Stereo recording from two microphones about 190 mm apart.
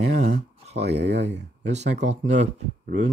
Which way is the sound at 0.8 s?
65° right (ahead or behind).